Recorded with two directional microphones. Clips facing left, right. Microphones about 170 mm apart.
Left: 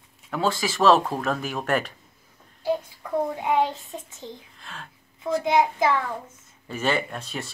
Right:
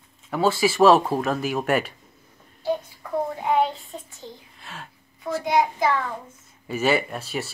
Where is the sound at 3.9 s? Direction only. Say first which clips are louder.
Left 1 dB; 20° left (ahead or behind).